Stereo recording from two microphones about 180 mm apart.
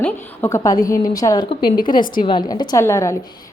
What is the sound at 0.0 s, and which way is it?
A woman's voice, 15° left (ahead or behind).